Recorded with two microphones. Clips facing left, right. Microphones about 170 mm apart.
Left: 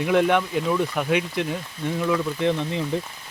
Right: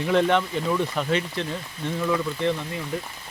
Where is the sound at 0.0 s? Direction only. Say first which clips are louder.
Left 1 dB; 10° left (ahead or behind).